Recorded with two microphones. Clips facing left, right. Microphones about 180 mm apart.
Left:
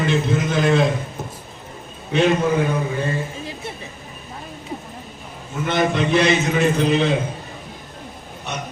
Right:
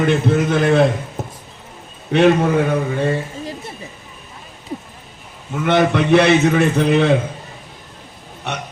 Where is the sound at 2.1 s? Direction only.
65° right (ahead or behind).